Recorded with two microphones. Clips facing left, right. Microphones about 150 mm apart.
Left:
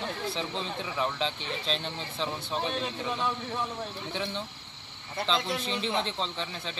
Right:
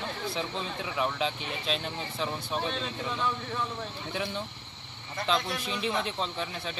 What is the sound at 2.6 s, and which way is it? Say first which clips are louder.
A man's voice: left 3 dB; 10° left (ahead or behind).